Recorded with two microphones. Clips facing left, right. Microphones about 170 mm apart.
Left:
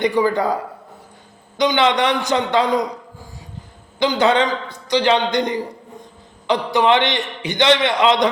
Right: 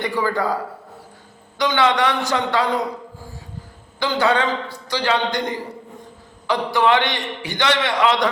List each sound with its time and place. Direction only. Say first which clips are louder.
0.0 s a man's voice: left 4 dB; 20° left (ahead or behind)
4.0 s a man's voice: left 3 dB; 20° left (ahead or behind)